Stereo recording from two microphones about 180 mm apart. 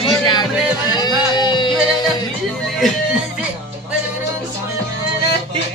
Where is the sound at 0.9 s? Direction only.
25° left (ahead or behind).